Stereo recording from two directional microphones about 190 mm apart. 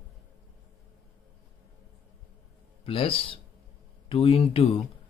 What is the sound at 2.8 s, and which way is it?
Speech, 30° left (ahead or behind).